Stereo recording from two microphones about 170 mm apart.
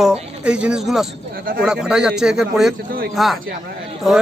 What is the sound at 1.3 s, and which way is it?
Speech, 55° right (ahead or behind).